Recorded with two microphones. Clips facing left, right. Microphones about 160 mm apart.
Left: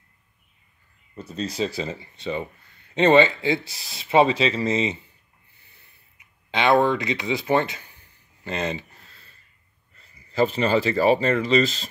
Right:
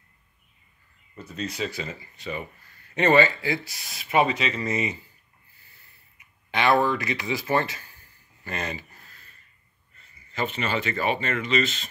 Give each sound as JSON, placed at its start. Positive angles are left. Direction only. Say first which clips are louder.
{"t": 1.1, "sound": "speech", "louder": "left 4 dB", "side_deg": 35}
{"t": 6.5, "sound": "speech", "louder": "left 3 dB", "side_deg": 20}
{"t": 8.5, "sound": "a sound", "louder": "left 5 dB", "side_deg": 20}
{"t": 10.0, "sound": "speech", "louder": "left 8 dB", "side_deg": 35}